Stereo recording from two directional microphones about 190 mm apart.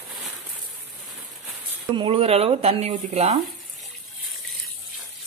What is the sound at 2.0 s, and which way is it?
Speech, 30° right (ahead or behind).